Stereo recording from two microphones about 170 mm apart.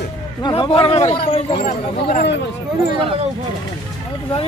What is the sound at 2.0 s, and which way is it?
Speech, 65° left (ahead or behind).